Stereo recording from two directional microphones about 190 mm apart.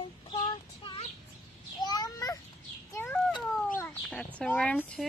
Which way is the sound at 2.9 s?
10° left (ahead or behind).